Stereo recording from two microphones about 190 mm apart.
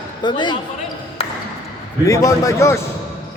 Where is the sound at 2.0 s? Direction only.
15° left (ahead or behind).